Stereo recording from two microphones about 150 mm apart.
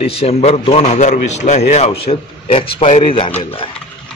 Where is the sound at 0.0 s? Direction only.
40° left (ahead or behind).